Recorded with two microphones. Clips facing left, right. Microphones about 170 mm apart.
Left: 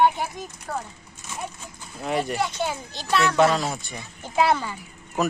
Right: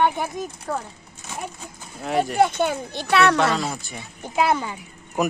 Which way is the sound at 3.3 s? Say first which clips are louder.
Left 2 dB; centre (ahead or behind).